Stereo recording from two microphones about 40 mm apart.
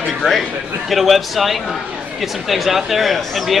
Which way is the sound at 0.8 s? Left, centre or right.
Centre.